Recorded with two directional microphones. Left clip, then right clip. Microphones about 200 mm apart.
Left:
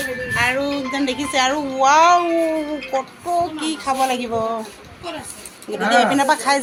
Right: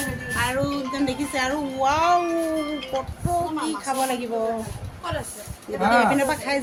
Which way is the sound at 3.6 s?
15° left (ahead or behind).